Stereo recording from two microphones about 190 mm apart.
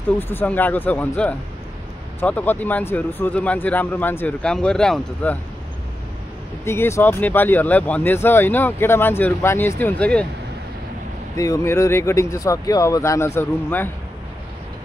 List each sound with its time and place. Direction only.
0.2 s speech: 10° left (ahead or behind)
6.6 s speech: 15° left (ahead or behind)
11.3 s speech: 15° left (ahead or behind)